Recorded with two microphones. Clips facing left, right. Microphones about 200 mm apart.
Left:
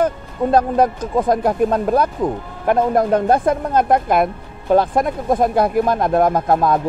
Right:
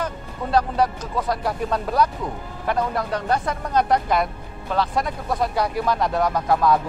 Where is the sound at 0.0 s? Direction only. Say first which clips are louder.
Left 10 dB; 50° left (ahead or behind).